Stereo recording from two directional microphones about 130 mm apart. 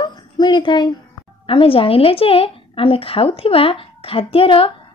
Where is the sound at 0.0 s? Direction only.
35° left (ahead or behind).